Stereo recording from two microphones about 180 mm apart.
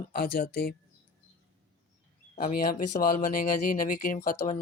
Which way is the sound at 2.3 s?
50° left (ahead or behind).